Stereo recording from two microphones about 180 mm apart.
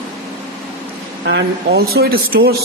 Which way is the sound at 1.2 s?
65° right (ahead or behind).